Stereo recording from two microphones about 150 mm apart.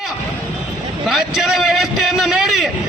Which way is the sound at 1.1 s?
Centre (ahead or behind).